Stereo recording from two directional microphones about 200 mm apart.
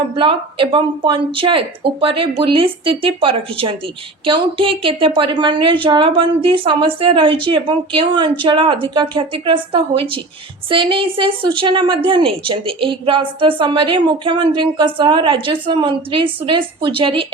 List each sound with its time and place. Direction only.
0.2 s a woman's voice: 25° right (ahead or behind)